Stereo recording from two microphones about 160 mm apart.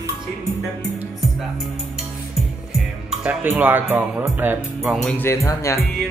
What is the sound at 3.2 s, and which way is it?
Speech, 10° right (ahead or behind).